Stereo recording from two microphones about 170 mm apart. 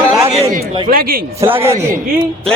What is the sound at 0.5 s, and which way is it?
Speech, 60° right (ahead or behind).